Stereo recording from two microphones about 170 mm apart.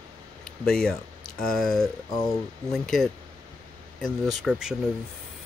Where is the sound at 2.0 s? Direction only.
20° left (ahead or behind).